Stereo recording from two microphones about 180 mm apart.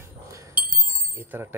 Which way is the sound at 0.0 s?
15° right (ahead or behind).